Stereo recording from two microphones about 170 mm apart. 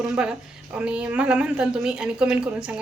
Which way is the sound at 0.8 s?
5° right (ahead or behind).